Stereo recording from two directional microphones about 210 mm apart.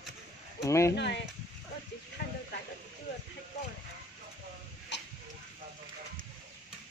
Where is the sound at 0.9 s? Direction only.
55° left (ahead or behind).